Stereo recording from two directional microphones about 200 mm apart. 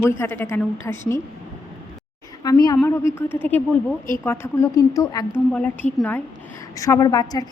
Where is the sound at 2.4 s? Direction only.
20° left (ahead or behind).